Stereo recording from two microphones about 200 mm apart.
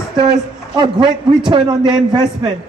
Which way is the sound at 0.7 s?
25° right (ahead or behind).